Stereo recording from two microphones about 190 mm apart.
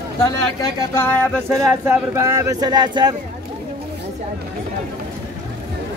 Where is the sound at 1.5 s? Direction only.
15° right (ahead or behind).